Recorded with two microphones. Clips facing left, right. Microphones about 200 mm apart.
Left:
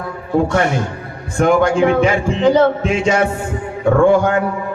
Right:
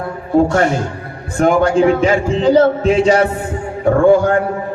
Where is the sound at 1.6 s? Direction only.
35° right (ahead or behind).